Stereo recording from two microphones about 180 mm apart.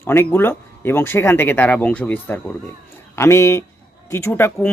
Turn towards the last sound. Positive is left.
turn(degrees=10)  # may be behind; listen again after turning